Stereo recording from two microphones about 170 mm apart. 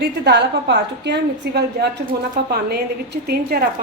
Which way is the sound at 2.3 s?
70° right (ahead or behind).